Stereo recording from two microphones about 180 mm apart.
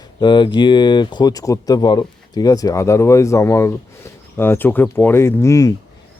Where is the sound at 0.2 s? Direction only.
25° left (ahead or behind).